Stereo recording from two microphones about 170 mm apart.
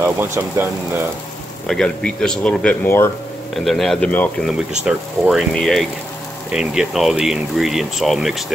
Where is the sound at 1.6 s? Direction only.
5° left (ahead or behind).